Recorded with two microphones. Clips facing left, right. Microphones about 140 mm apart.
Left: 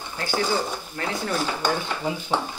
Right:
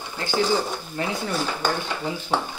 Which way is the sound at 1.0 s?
20° right (ahead or behind).